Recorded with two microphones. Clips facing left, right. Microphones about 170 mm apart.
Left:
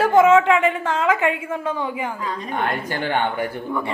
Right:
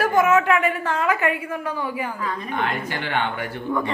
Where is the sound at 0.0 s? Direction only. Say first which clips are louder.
Left 4 dB; 25° left (ahead or behind).